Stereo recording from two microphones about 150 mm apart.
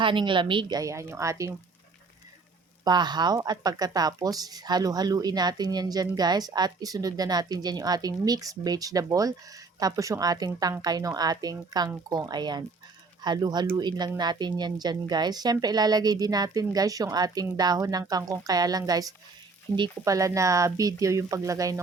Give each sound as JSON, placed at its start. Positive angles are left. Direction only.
{"t": 0.0, "sound": "a woman's voice", "side_deg": -35}
{"t": 2.8, "sound": "a woman's voice", "side_deg": -30}